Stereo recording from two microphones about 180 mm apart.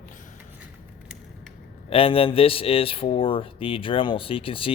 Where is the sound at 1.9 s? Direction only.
30° left (ahead or behind).